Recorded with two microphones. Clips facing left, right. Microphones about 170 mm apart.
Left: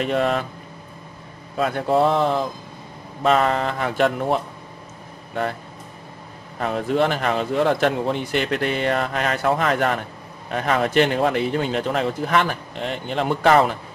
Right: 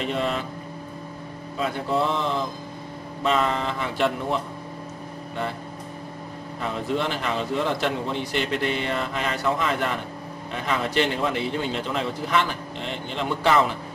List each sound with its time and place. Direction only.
0.1 s a man's voice: 55° left (ahead or behind)
1.6 s speech: 55° left (ahead or behind)
6.6 s a man's voice: 55° left (ahead or behind)